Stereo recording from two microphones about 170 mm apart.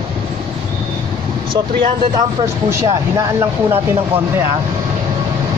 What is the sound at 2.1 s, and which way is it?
Speech, 20° right (ahead or behind).